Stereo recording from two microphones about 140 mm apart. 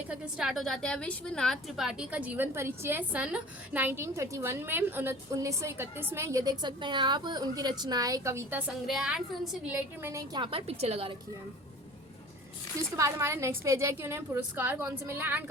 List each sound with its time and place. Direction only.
0.1 s a woman's voice: 5° right (ahead or behind)
8.9 s a woman's voice: 5° right (ahead or behind)
9.7 s a woman's voice: 20° right (ahead or behind)
10.3 s a woman's voice: 40° right (ahead or behind)
13.0 s a woman's voice: 20° right (ahead or behind)